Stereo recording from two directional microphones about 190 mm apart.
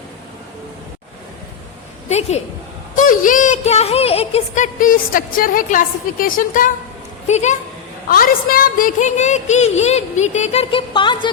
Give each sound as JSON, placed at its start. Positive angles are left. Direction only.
{"t": 2.0, "sound": "a woman's voice", "side_deg": 35}
{"t": 2.9, "sound": "a sound", "side_deg": 45}
{"t": 7.3, "sound": "a woman's voice", "side_deg": 35}
{"t": 8.1, "sound": "a woman's voice", "side_deg": 50}